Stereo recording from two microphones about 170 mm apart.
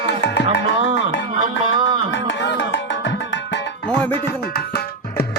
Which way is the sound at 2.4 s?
90° left.